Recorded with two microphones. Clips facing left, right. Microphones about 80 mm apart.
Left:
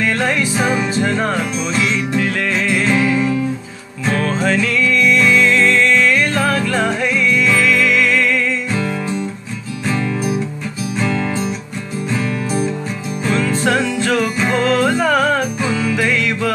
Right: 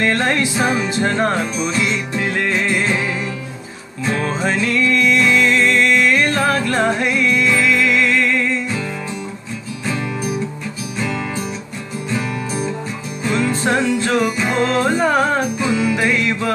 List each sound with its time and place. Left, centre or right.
0.7 s music: right
4.2 s music: right
7.1 s music: right
13.3 s music: right